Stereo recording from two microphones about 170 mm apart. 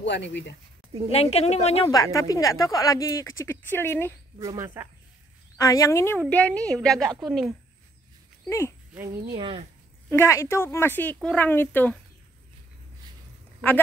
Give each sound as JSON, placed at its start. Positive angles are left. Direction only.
{"t": 0.0, "sound": "speech", "side_deg": 90}
{"t": 1.1, "sound": "speech", "side_deg": 35}
{"t": 1.9, "sound": "speech", "side_deg": 20}
{"t": 4.4, "sound": "speech", "side_deg": -20}
{"t": 5.6, "sound": "a woman's voice", "side_deg": 20}
{"t": 8.5, "sound": "speech", "side_deg": 15}
{"t": 9.3, "sound": "speech", "side_deg": -30}
{"t": 10.0, "sound": "speech", "side_deg": 15}